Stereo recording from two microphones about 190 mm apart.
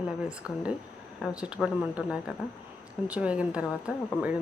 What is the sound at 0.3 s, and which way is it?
Speech, 5° right (ahead or behind).